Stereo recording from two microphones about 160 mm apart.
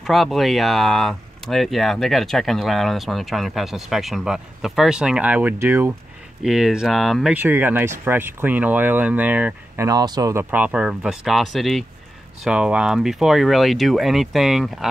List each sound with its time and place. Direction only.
0.0 s speech: centre (ahead or behind)
6.4 s speech: 5° right (ahead or behind)
7.3 s speech: 15° right (ahead or behind)
9.8 s speech: 25° right (ahead or behind)
10.5 s speech: 10° right (ahead or behind)